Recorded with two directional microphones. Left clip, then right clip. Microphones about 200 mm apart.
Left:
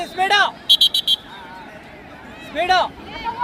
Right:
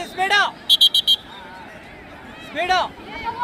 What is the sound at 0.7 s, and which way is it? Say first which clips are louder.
Frog: right 2 dB; 25° left (ahead or behind).